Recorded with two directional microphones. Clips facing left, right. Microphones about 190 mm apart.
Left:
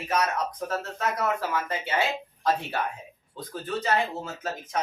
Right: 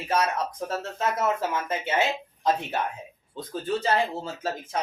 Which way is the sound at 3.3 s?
25° right (ahead or behind).